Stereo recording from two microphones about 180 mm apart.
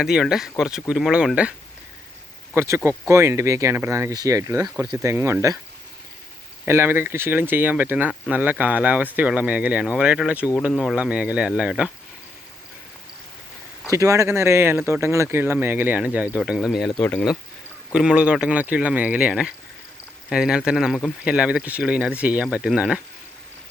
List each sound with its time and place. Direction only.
0.0 s speech: 5° right (ahead or behind)
2.6 s speech: 15° right (ahead or behind)
6.7 s speech: 15° right (ahead or behind)
13.9 s speech: 15° right (ahead or behind); by 17.3 s 5° left (ahead or behind)
17.9 s speech: 5° right (ahead or behind)